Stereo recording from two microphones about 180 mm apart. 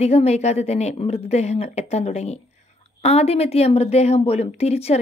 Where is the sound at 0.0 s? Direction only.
35° left (ahead or behind).